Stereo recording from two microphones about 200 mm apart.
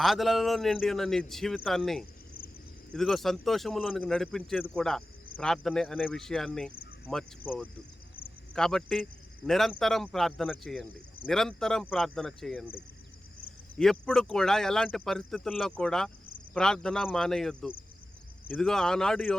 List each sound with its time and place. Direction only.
0.0 s speech: centre (ahead or behind)